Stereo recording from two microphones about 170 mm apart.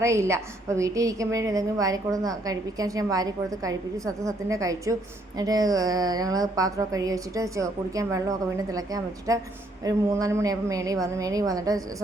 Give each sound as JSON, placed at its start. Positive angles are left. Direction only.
{"t": 0.0, "sound": "a woman's voice", "side_deg": -15}